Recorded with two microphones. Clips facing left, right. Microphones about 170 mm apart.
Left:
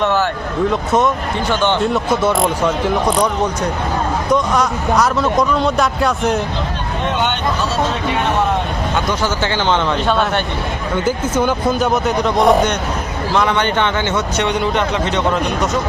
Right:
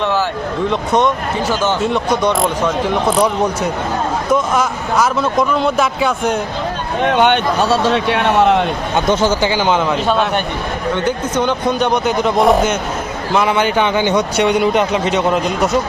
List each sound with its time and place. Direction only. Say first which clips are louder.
0.0 s speech: left 1 dB; centre (ahead or behind)
7.0 s speech: right 6 dB; 60° right (ahead or behind); by 8.5 s 75° right (ahead or behind)
9.0 s speech: right 4 dB; 15° right (ahead or behind)
10.9 s speech: left 2 dB; 5° left (ahead or behind); by 15.2 s 10° right (ahead or behind)